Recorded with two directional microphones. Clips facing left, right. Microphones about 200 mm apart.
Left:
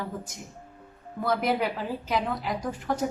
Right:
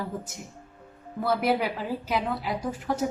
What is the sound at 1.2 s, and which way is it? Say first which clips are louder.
A woman's voice: right 1 dB; 5° right (ahead or behind).